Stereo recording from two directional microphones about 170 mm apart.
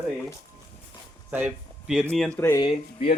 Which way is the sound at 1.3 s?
10° right (ahead or behind).